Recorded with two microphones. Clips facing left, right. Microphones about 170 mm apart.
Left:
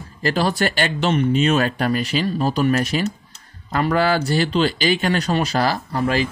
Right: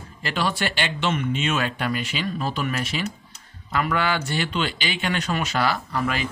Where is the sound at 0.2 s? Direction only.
40° left (ahead or behind).